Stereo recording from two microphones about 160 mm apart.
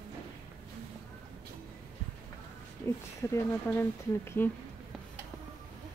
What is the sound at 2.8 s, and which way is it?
Speech, 15° left (ahead or behind).